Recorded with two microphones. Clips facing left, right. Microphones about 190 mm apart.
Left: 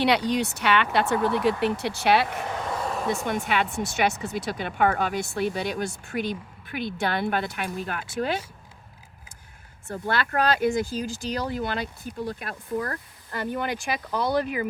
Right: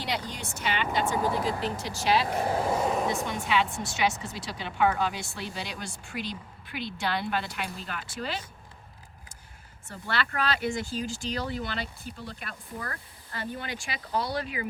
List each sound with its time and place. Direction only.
0.0 s speech: 70° left (ahead or behind)
2.3 s vehicle: 35° right (ahead or behind)
2.8 s a sound: 10° right (ahead or behind)
3.2 s speech: 55° left (ahead or behind)
9.9 s speech: 50° left (ahead or behind)